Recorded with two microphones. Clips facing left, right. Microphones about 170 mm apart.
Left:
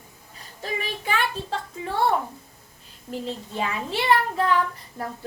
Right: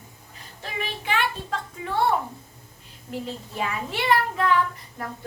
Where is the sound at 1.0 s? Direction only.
40° left (ahead or behind).